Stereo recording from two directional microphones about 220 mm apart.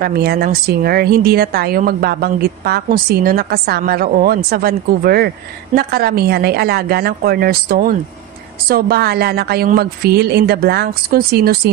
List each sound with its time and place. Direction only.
0.0 s speech: 45° right (ahead or behind)